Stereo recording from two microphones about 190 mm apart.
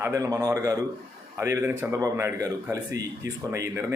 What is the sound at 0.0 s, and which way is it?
A man's voice, 15° right (ahead or behind).